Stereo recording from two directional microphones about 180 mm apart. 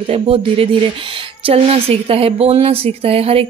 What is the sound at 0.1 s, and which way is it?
Speech, 30° right (ahead or behind).